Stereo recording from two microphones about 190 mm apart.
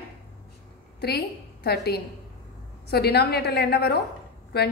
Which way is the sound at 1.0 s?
60° left (ahead or behind).